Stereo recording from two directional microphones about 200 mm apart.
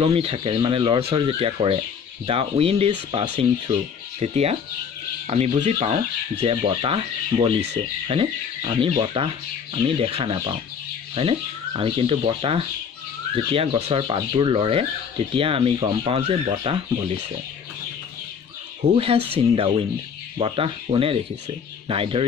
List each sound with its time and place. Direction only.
0.0 s speech: 30° right (ahead or behind)
18.8 s speech: 30° right (ahead or behind)